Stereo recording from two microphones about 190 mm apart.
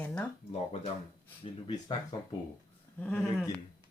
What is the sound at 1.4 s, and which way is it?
Speech, 25° left (ahead or behind).